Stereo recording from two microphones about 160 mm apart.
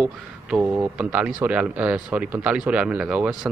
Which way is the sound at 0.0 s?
10° right (ahead or behind).